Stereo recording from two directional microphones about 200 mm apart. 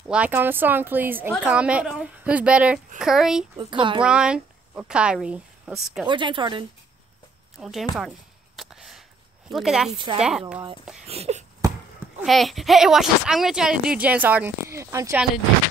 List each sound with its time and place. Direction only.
0.1 s speech: 10° right (ahead or behind)
3.5 s a woman's voice: 25° right (ahead or behind)
4.0 s speech: 5° right (ahead or behind)
6.0 s a woman's voice: 25° right (ahead or behind)
7.5 s speech: centre (ahead or behind)
8.5 s a sound: centre (ahead or behind)
9.5 s speech: centre (ahead or behind)
11.1 s a sound: 30° right (ahead or behind)
12.2 s speech: centre (ahead or behind)